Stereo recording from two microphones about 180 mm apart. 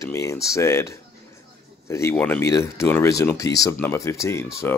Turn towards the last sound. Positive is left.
turn(degrees=15)  # may be behind; listen again after turning